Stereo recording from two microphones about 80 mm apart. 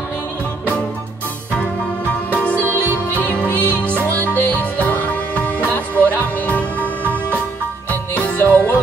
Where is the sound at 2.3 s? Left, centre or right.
Centre.